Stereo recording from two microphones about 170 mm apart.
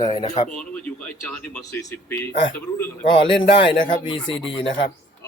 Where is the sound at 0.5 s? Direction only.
5° left (ahead or behind).